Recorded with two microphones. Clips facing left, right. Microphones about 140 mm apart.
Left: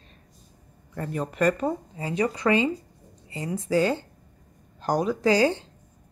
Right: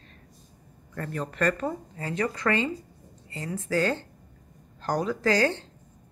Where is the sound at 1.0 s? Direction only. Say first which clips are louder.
Left 3 dB; 15° left (ahead or behind).